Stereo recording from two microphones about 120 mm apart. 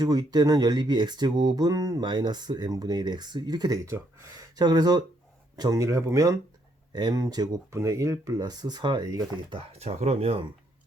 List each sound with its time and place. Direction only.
0.0 s speech: 30° right (ahead or behind)
9.6 s speech: 60° right (ahead or behind)